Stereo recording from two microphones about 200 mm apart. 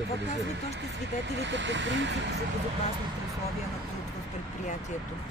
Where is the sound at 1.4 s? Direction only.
65° right (ahead or behind).